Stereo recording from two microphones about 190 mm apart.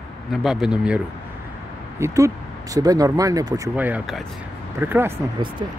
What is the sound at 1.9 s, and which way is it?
Speech, 15° right (ahead or behind).